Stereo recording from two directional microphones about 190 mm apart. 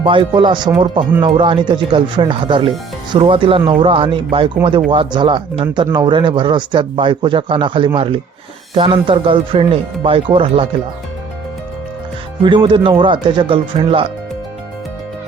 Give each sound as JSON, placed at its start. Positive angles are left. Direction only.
{"t": 0.0, "sound": "speech", "side_deg": -25}
{"t": 12.4, "sound": "speech", "side_deg": -25}